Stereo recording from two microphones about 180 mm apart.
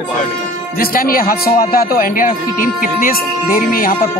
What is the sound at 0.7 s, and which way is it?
A man's voice, 55° left (ahead or behind).